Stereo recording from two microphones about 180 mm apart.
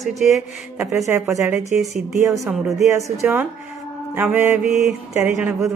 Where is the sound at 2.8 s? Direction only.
15° right (ahead or behind).